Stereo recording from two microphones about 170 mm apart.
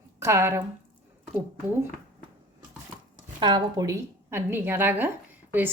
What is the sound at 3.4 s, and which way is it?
A woman's voice, 25° right (ahead or behind).